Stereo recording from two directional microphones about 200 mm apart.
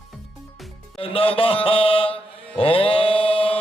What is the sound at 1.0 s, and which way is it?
Mantra, 25° left (ahead or behind).